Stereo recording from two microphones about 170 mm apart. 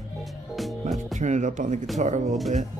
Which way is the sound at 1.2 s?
45° right (ahead or behind).